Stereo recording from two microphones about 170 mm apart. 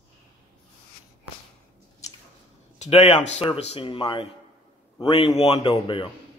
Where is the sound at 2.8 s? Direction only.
35° left (ahead or behind).